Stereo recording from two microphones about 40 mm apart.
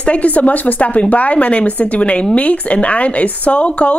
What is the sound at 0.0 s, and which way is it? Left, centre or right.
Speech, left.